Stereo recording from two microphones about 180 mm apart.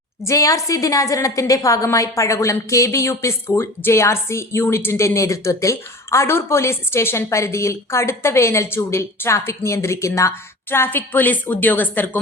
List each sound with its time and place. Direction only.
0.3 s a woman's voice: 20° left (ahead or behind)